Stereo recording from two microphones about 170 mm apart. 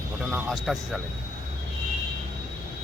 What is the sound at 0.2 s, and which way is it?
Speech, centre (ahead or behind).